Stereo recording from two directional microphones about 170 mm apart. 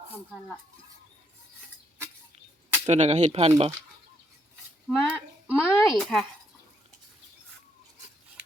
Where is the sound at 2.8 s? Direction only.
40° right (ahead or behind).